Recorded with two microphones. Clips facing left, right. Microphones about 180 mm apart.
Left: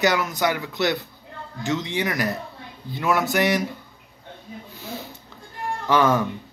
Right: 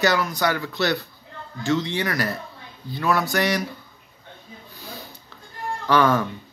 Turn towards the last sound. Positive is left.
turn(degrees=20)  # may be behind; listen again after turning